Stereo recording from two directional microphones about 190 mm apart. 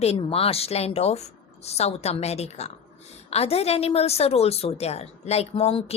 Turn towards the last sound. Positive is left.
turn(degrees=30)  # may be behind; listen again after turning